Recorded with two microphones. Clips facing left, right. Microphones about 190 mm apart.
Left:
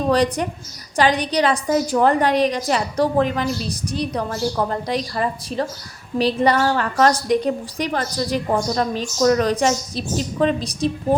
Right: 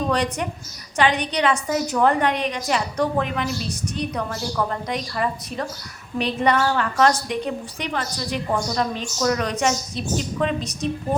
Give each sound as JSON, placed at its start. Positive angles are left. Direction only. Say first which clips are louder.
{"t": 0.1, "sound": "a woman's voice", "louder": "left 5 dB", "side_deg": 35}